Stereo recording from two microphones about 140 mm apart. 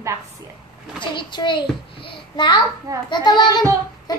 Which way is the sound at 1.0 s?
35° left (ahead or behind).